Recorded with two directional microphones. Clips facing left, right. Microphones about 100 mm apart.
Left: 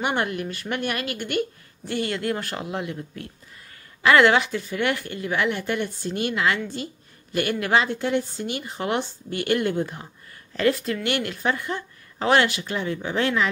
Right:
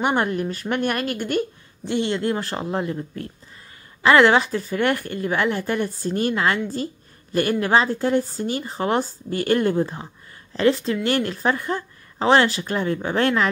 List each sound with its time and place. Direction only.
0.0 s a woman's voice: 35° right (ahead or behind)
1.9 s a woman's voice: 25° right (ahead or behind); by 13.5 s 50° right (ahead or behind)